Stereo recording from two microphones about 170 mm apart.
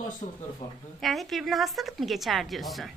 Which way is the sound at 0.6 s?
20° left (ahead or behind).